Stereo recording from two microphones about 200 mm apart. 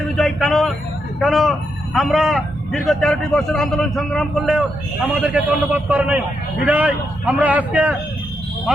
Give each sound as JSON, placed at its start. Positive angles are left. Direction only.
{"t": 0.0, "sound": "a man's voice", "side_deg": 0}